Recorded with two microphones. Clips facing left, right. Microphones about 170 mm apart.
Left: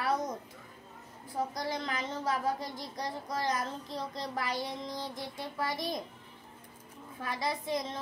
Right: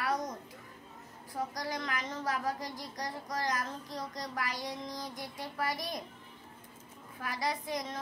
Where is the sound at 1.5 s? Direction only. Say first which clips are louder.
Left 2 dB; 25° left (ahead or behind).